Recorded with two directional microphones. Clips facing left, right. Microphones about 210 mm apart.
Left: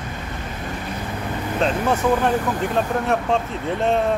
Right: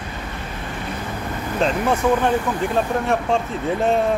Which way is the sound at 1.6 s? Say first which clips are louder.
Right 1 dB; centre (ahead or behind).